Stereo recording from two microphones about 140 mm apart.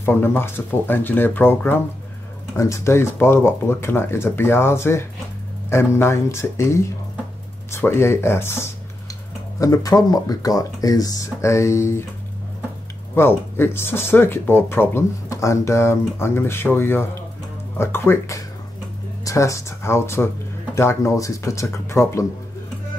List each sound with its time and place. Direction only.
0.0 s speech: 15° left (ahead or behind)
13.1 s speech: 15° left (ahead or behind)